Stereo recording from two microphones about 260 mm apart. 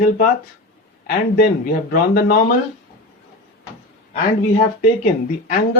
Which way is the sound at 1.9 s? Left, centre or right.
Left.